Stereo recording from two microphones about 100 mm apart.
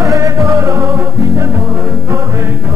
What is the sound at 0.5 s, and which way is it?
Music, 30° right (ahead or behind).